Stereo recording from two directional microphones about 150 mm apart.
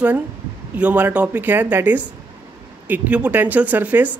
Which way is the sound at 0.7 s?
10° right (ahead or behind).